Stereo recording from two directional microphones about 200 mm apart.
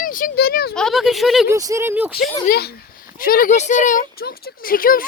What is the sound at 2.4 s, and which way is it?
Speech, 50° left (ahead or behind).